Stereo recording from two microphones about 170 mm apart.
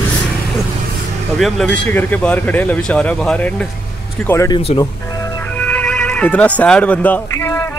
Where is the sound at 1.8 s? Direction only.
10° left (ahead or behind).